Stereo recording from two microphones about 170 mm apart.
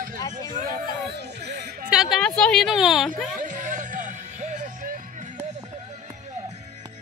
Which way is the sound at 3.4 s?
50° right (ahead or behind).